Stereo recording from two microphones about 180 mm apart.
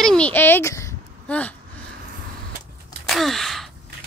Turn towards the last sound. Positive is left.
turn(degrees=0)  # may be behind; listen again after turning